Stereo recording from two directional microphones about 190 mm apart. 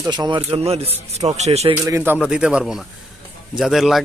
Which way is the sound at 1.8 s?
15° right (ahead or behind).